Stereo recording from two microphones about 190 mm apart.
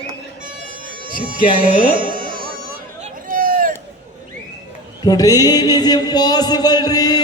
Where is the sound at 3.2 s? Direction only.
45° right (ahead or behind).